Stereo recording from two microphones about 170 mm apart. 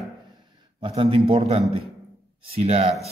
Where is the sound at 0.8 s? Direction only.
35° right (ahead or behind).